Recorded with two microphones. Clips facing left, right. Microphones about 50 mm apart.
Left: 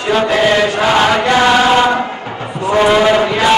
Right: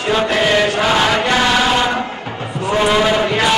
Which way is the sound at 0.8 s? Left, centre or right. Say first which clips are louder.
Left 3 dB; centre.